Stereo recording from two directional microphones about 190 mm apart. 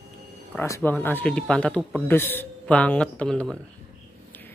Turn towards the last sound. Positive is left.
turn(degrees=5)  # may be behind; listen again after turning